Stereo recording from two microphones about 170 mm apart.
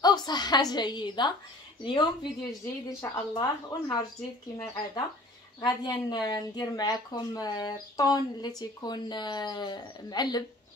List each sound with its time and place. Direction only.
0.0 s speech: 25° left (ahead or behind)
5.6 s speech: 25° left (ahead or behind)